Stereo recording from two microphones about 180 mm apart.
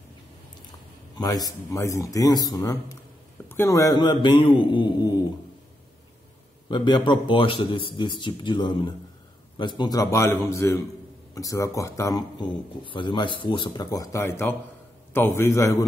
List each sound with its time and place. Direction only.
1.1 s a man's voice: 20° left (ahead or behind)
6.7 s a man's voice: 25° left (ahead or behind)